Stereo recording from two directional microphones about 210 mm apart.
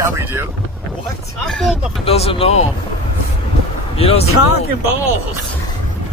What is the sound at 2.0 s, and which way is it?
Speech, 30° left (ahead or behind).